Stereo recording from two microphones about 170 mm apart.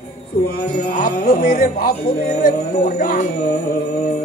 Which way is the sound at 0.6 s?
60° left (ahead or behind).